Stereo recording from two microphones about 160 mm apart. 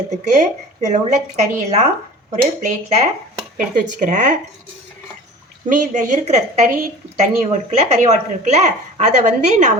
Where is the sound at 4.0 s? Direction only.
50° right (ahead or behind).